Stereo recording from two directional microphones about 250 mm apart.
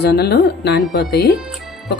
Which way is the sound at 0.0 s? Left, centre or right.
Left.